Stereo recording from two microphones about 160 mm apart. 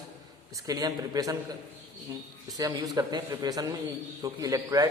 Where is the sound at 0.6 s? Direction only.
25° right (ahead or behind).